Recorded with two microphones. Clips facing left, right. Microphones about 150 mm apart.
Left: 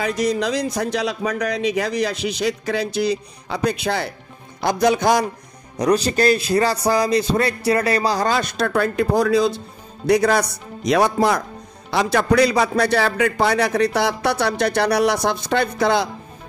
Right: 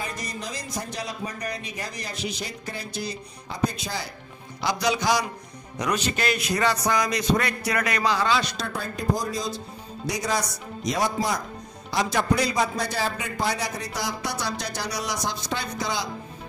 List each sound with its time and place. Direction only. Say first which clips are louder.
0.0 s speech: left 13 dB; 75° left (ahead or behind)
4.6 s music: left 7 dB; 50° left (ahead or behind)
5.8 s a man's voice: left 9 dB; 35° left (ahead or behind); by 16.1 s 60° left (ahead or behind)